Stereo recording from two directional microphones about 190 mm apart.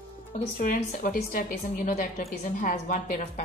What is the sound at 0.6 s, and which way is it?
A woman's voice, 45° left (ahead or behind).